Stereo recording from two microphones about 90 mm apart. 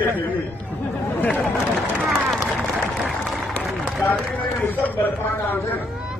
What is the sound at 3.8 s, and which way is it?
Run, 15° left (ahead or behind).